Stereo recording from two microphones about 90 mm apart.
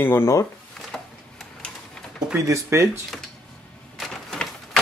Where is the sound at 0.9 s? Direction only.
5° left (ahead or behind).